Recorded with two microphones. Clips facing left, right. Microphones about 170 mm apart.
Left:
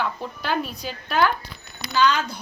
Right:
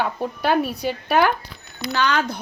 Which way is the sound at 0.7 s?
65° right (ahead or behind).